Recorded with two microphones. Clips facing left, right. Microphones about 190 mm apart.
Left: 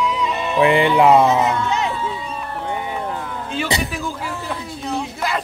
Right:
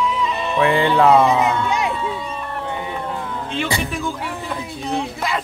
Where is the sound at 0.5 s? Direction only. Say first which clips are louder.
Left 2 dB; 15° left (ahead or behind).